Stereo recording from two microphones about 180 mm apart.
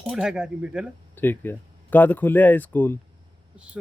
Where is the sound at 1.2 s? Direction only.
10° left (ahead or behind).